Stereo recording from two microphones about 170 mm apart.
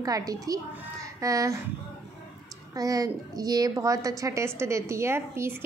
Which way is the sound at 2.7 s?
20° right (ahead or behind).